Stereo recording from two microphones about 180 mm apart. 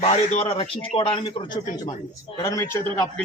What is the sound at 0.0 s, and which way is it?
A man's voice, 40° left (ahead or behind).